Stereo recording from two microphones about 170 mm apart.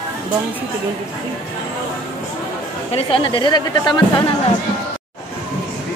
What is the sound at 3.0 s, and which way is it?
Speech, 30° left (ahead or behind).